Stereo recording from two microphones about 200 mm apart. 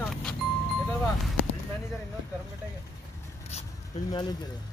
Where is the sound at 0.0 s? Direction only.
5° left (ahead or behind).